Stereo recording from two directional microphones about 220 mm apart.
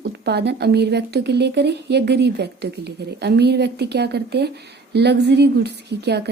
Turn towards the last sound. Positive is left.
turn(degrees=-50)  # may be behind; listen again after turning